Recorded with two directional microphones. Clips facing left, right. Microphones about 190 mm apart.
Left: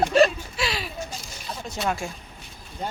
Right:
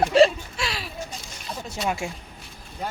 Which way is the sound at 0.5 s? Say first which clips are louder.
Left 2 dB; centre (ahead or behind).